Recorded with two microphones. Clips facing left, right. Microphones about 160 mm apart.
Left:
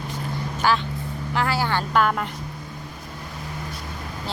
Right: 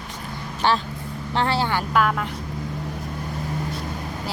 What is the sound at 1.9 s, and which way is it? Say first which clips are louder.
Speech: left 1 dB; centre (ahead or behind).